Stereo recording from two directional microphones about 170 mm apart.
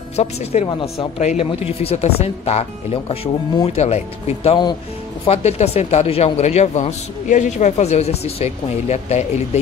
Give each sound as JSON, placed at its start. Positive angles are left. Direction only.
{"t": 0.1, "sound": "speech", "side_deg": 40}